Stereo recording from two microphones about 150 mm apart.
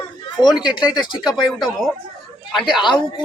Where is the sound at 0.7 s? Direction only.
30° left (ahead or behind).